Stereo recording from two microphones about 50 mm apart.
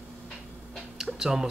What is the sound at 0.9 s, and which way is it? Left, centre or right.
Speech, centre.